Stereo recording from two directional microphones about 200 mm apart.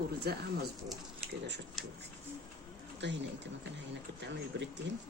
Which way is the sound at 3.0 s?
65° right (ahead or behind).